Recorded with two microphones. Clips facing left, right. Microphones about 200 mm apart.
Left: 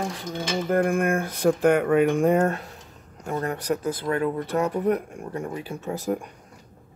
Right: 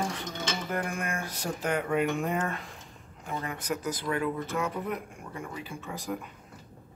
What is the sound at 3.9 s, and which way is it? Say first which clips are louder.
Speech: left 5 dB; 55° left (ahead or behind).